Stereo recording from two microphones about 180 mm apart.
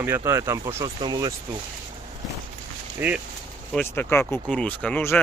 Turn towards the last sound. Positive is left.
turn(degrees=10)  # may be behind; listen again after turning